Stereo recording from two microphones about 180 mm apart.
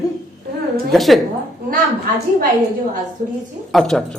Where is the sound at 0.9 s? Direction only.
Centre (ahead or behind).